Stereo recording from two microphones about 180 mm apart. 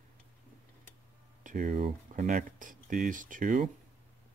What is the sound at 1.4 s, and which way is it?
Speech, 45° right (ahead or behind).